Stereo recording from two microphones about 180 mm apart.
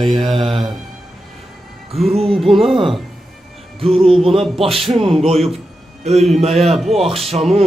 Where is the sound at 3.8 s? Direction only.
30° right (ahead or behind).